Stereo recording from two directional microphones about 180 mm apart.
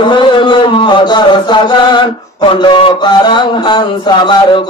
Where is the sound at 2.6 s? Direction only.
25° left (ahead or behind).